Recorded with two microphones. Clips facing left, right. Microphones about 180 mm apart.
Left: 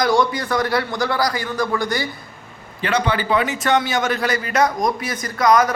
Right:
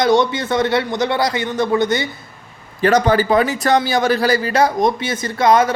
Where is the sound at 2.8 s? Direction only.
40° right (ahead or behind).